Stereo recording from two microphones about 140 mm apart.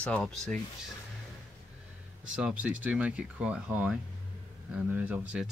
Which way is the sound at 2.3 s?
10° right (ahead or behind).